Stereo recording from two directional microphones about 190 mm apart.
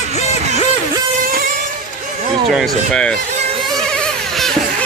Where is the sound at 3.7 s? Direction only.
5° left (ahead or behind).